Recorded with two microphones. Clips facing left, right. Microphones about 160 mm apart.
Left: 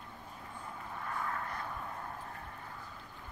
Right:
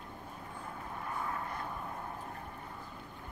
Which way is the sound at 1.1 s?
15° right (ahead or behind).